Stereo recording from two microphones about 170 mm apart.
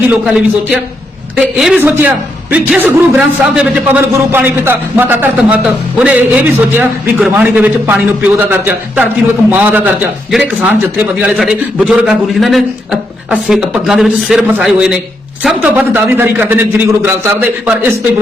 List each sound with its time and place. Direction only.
0.1 s a man's voice: 5° right (ahead or behind)